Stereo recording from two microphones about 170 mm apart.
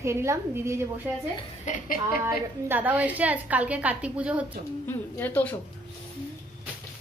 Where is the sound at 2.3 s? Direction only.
10° right (ahead or behind).